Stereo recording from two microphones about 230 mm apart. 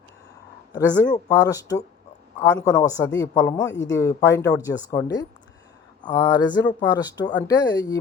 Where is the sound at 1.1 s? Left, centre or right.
Centre.